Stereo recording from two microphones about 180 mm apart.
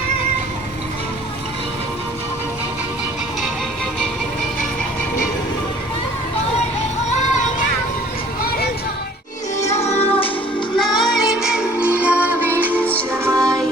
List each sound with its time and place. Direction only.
9.6 s music: 35° left (ahead or behind)
10.8 s music: centre (ahead or behind)